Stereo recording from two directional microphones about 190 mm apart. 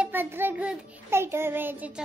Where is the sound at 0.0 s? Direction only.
10° right (ahead or behind).